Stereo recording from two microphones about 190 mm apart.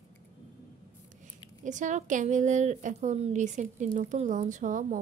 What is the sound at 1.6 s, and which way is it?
A woman's voice, 40° right (ahead or behind).